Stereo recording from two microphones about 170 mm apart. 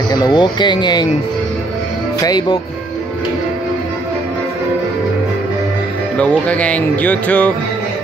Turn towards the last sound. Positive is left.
turn(degrees=5)  # may be behind; listen again after turning